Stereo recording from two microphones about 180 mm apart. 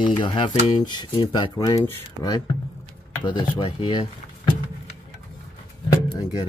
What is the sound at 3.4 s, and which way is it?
Speech, 30° left (ahead or behind).